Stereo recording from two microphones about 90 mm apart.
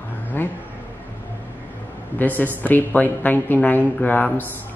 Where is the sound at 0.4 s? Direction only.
25° left (ahead or behind).